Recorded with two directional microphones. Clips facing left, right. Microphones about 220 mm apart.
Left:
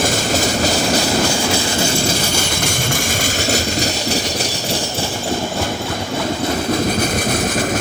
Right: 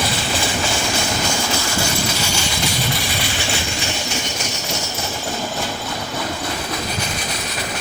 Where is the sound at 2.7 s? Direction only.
50° left (ahead or behind).